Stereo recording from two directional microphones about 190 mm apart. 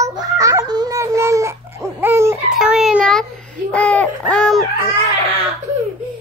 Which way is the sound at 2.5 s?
Centre (ahead or behind).